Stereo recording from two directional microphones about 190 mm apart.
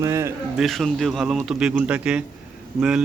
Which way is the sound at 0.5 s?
Centre (ahead or behind).